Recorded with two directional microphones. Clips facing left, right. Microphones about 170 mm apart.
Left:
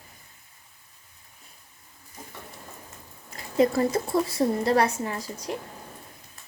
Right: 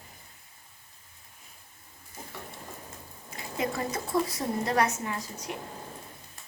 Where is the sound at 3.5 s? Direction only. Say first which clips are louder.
Left 10 dB; 35° left (ahead or behind).